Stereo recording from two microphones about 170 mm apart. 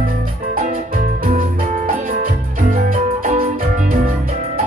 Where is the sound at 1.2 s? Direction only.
55° right (ahead or behind).